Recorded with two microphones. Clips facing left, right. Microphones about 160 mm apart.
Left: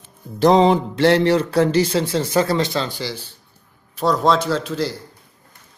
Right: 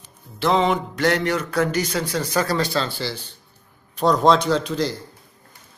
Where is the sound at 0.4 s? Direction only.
35° left (ahead or behind); by 4.9 s 5° left (ahead or behind).